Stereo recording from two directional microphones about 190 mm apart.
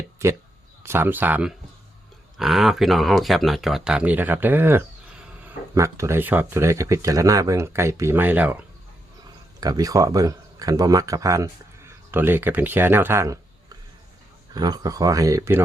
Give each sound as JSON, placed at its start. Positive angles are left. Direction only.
{"t": 0.2, "sound": "speech", "side_deg": -15}
{"t": 9.6, "sound": "speech", "side_deg": -20}